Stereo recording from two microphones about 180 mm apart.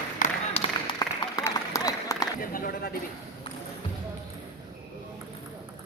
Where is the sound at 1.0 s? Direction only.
20° left (ahead or behind).